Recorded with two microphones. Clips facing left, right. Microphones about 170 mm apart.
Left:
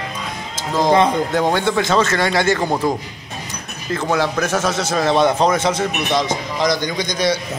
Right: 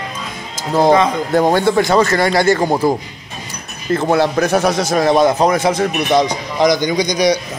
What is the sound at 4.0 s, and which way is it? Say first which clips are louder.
A man's voice: right 4 dB; 10° right (ahead or behind).